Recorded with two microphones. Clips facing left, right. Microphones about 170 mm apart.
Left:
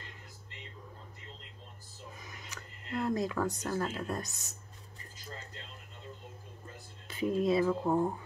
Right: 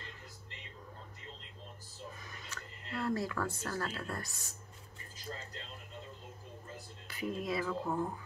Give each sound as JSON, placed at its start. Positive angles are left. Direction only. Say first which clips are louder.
{"t": 2.5, "sound": "speech", "louder": "left 5 dB", "side_deg": 15}
{"t": 7.1, "sound": "speech", "louder": "left 8 dB", "side_deg": 25}